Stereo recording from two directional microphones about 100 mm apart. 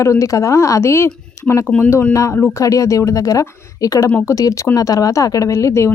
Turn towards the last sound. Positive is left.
turn(degrees=25)  # may be behind; listen again after turning